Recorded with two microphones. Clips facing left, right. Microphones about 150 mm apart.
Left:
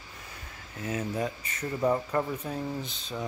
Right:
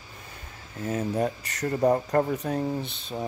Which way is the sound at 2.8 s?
60° right (ahead or behind).